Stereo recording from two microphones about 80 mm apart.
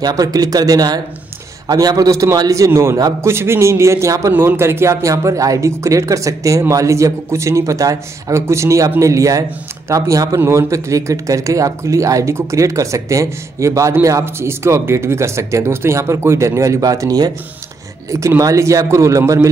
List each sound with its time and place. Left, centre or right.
0.0 s a man's voice: right
4.3 s a man's voice: right
18.4 s speech: right